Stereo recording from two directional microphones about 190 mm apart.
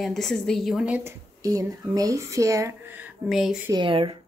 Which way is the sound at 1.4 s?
20° right (ahead or behind).